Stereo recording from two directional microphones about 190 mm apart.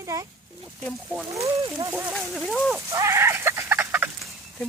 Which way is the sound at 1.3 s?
15° right (ahead or behind).